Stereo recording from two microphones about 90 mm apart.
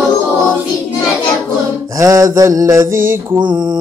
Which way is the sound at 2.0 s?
35° right (ahead or behind).